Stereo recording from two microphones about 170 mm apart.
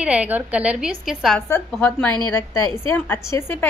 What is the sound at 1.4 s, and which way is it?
A woman's voice, 15° left (ahead or behind).